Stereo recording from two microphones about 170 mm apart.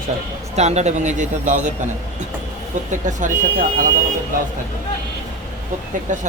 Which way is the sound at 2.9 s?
45° right (ahead or behind).